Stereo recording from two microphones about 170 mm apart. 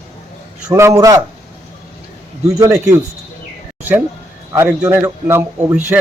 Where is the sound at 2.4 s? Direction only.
20° right (ahead or behind).